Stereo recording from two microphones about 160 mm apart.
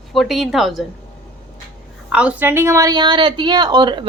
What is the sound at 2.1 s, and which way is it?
A woman's voice, 5° right (ahead or behind).